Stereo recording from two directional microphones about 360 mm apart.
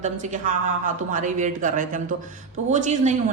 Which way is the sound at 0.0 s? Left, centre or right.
Centre.